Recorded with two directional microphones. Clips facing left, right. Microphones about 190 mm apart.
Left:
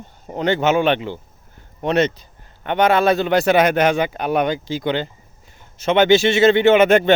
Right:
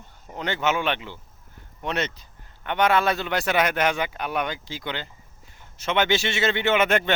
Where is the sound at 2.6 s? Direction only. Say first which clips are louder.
Left 5 dB; 30° left (ahead or behind).